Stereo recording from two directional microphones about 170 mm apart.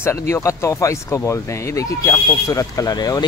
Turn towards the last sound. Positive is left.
turn(degrees=25)  # may be behind; listen again after turning